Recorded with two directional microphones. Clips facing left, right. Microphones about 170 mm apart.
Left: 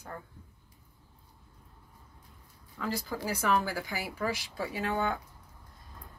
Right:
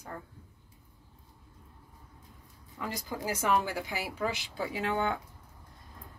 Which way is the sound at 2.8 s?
15° right (ahead or behind).